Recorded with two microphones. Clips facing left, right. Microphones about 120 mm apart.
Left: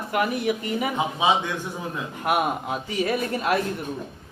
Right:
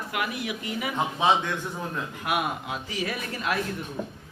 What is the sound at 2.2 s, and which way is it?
Speech, 40° left (ahead or behind).